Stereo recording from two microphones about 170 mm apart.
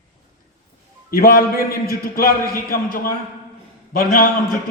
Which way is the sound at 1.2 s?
60° left (ahead or behind).